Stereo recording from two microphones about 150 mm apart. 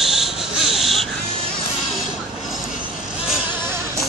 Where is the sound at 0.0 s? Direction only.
Centre (ahead or behind).